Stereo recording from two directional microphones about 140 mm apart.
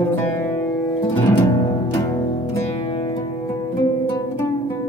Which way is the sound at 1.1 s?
30° left (ahead or behind).